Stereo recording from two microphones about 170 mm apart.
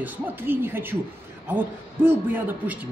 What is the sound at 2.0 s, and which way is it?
Speech, 10° right (ahead or behind).